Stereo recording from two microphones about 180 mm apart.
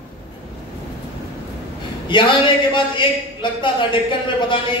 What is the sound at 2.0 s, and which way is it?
A man's voice, 25° left (ahead or behind).